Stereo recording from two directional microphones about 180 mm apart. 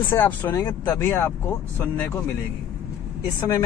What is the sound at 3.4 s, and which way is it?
Speech, 20° left (ahead or behind).